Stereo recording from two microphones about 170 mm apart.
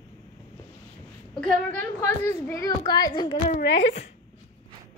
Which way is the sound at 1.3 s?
5° left (ahead or behind).